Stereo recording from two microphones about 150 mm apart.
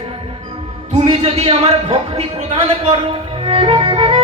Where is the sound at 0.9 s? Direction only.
45° right (ahead or behind).